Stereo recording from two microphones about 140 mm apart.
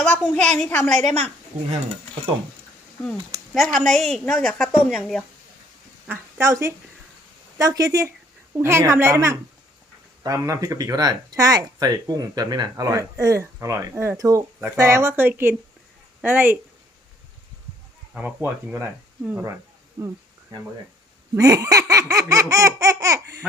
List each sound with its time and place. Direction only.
0.0 s a woman's voice: 10° left (ahead or behind)
1.0 s a woman's voice: 45° right (ahead or behind)
3.0 s speech: 5° left (ahead or behind)
6.1 s a woman's voice: 15° right (ahead or behind)
18.1 s speech: 15° right (ahead or behind)
20.0 s speech: 30° right (ahead or behind)